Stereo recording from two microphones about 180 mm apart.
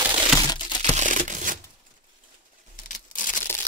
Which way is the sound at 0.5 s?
25° left (ahead or behind).